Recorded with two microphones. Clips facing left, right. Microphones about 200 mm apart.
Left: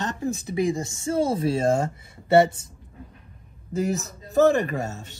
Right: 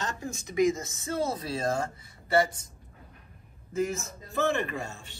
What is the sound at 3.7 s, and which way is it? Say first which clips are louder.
A man's voice: left 4 dB; 35° left (ahead or behind).